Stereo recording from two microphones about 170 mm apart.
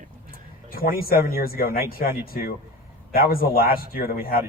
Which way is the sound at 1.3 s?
60° left (ahead or behind).